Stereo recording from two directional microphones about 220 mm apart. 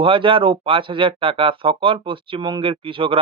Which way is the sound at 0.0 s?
25° right (ahead or behind).